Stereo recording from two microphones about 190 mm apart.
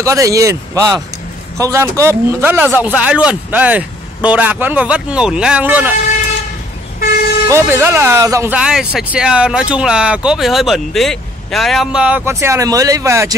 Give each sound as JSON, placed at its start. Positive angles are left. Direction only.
{"t": 0.0, "sound": "speech", "side_deg": -15}
{"t": 7.4, "sound": "speech", "side_deg": -15}